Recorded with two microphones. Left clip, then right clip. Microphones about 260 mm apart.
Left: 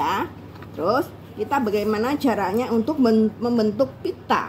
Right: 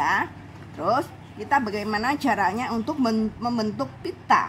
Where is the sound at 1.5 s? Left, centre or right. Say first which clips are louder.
Left 1 dB; right.